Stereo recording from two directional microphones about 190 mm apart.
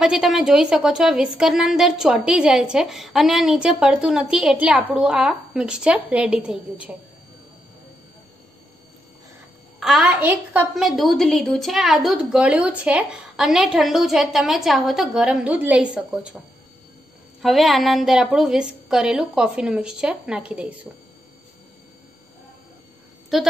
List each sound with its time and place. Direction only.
0.0 s a woman's voice: 5° right (ahead or behind)
9.8 s a woman's voice: centre (ahead or behind)
17.4 s a woman's voice: centre (ahead or behind)
23.3 s a woman's voice: centre (ahead or behind)